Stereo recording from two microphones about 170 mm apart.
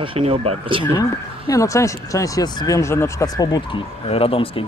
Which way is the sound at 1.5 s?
20° left (ahead or behind).